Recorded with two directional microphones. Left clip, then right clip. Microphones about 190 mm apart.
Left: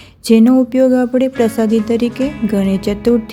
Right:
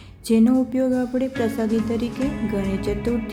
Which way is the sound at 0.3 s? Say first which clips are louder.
Left 8 dB; 40° left (ahead or behind).